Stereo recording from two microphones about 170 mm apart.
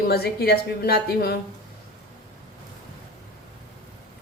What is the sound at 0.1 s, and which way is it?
A woman's voice, 65° left (ahead or behind).